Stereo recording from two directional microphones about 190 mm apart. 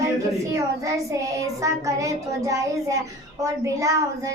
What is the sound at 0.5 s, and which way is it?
Child singing, 15° right (ahead or behind).